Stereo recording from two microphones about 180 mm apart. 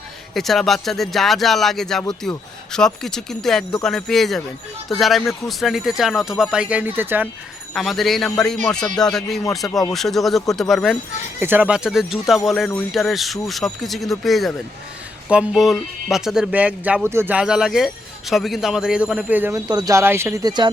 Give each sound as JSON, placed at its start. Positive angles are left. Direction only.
{"t": 0.3, "sound": "speech", "side_deg": 0}
{"t": 7.7, "sound": "speech", "side_deg": 0}
{"t": 11.3, "sound": "speech", "side_deg": -10}
{"t": 19.6, "sound": "speech", "side_deg": -20}